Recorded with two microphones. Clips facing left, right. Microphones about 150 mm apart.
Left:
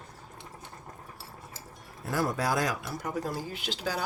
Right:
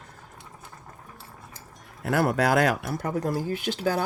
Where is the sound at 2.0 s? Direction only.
65° right (ahead or behind).